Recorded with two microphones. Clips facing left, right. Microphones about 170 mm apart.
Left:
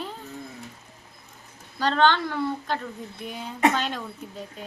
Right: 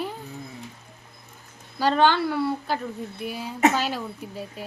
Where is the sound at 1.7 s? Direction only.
10° right (ahead or behind).